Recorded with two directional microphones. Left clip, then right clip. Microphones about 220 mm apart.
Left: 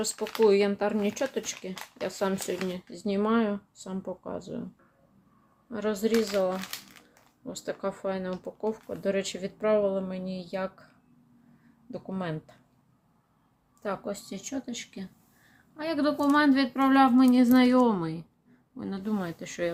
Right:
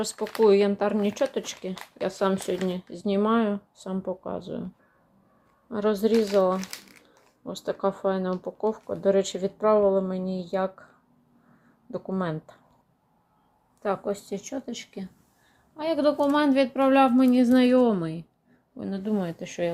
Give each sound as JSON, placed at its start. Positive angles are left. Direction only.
{"t": 0.0, "sound": "speech", "side_deg": -5}
{"t": 5.7, "sound": "speech", "side_deg": -10}
{"t": 11.9, "sound": "speech", "side_deg": -5}
{"t": 13.8, "sound": "speech", "side_deg": -5}